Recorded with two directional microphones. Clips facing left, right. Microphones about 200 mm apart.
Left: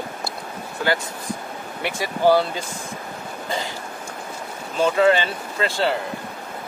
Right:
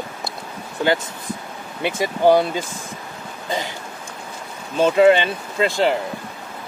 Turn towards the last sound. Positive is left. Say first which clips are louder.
# right 4 dB
turn(degrees=-15)  # may be behind; listen again after turning